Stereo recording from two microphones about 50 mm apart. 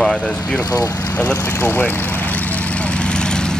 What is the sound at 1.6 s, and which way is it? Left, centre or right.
Speech, left.